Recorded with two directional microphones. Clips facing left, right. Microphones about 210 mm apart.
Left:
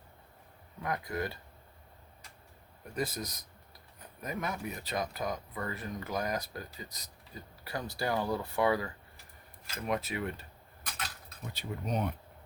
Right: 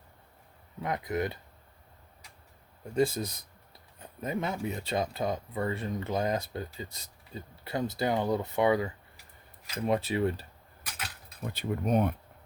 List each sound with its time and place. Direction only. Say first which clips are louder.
0.8 s speech: right 4 dB; 20° right (ahead or behind)
2.8 s speech: right 8 dB; 25° right (ahead or behind)
11.5 s speech: right 8 dB; 50° right (ahead or behind)